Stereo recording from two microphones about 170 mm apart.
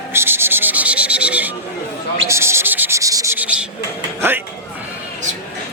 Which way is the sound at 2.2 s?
15° right (ahead or behind).